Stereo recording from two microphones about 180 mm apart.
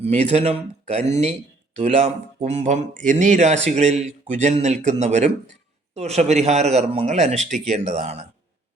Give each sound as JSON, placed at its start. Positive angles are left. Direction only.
{"t": 0.0, "sound": "speech", "side_deg": -35}